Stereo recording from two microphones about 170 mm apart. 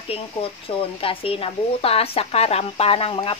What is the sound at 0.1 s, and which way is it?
Speech, 35° left (ahead or behind).